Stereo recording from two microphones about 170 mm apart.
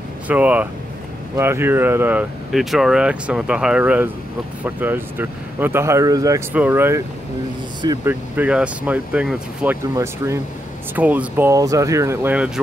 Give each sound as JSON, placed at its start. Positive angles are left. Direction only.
{"t": 0.3, "sound": "speech", "side_deg": -10}
{"t": 6.5, "sound": "speech", "side_deg": -10}
{"t": 8.0, "sound": "speech", "side_deg": -10}
{"t": 9.9, "sound": "speech", "side_deg": -15}